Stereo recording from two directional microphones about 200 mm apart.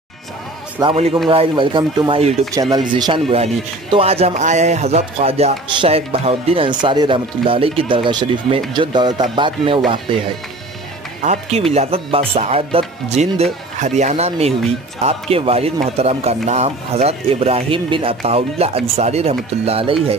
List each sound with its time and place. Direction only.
0.7 s a man's voice: 30° right (ahead or behind)